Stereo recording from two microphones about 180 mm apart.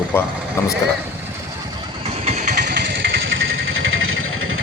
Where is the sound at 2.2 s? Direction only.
40° right (ahead or behind); by 3.1 s 55° right (ahead or behind).